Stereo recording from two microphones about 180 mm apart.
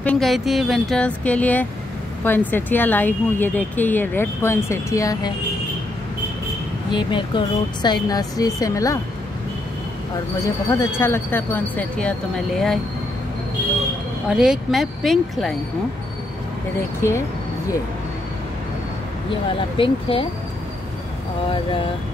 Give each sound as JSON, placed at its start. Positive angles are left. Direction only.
{"t": 0.0, "sound": "speech", "side_deg": 5}
{"t": 6.9, "sound": "a woman's voice", "side_deg": 25}
{"t": 10.4, "sound": "speech", "side_deg": 15}
{"t": 14.3, "sound": "speech", "side_deg": -5}
{"t": 19.8, "sound": "speech", "side_deg": 30}